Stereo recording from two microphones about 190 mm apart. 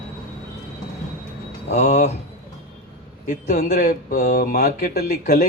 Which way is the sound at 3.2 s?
40° left (ahead or behind).